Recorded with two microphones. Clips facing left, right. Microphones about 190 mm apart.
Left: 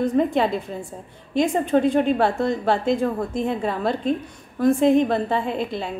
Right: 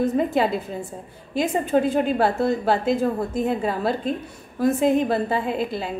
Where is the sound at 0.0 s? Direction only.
5° right (ahead or behind).